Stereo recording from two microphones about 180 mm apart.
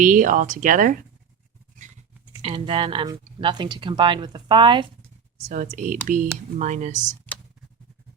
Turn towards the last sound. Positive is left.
turn(degrees=-40)  # may be behind; listen again after turning